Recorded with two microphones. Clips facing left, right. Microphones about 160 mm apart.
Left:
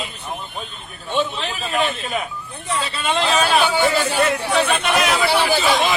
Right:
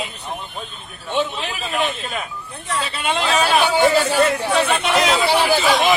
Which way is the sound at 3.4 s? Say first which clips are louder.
Right 1 dB; 20° right (ahead or behind).